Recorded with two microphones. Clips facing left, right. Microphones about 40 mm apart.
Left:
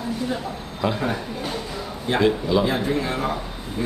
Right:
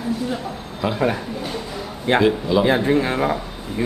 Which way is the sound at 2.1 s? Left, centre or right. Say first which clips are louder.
Right 3 dB; right.